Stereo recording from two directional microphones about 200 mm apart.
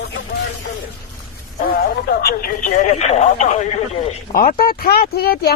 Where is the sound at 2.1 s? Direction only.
45° left (ahead or behind).